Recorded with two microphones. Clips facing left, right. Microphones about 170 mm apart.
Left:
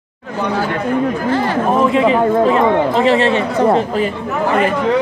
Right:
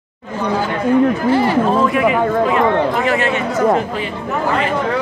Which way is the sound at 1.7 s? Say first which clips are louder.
Left 2 dB; 20° left (ahead or behind).